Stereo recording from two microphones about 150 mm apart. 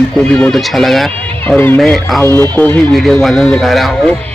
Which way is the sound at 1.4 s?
15° left (ahead or behind).